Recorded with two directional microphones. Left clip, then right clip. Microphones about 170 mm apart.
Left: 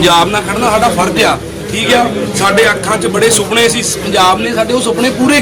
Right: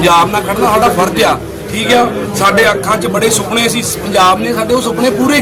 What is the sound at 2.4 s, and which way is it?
A man's voice, 10° right (ahead or behind).